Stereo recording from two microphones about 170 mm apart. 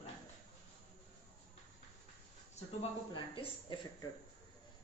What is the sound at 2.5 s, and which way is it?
Speech, 35° left (ahead or behind).